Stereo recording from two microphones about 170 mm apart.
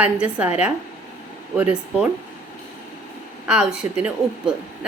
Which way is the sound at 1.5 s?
10° right (ahead or behind).